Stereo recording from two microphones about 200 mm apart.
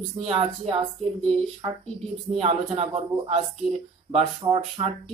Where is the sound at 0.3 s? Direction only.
30° right (ahead or behind).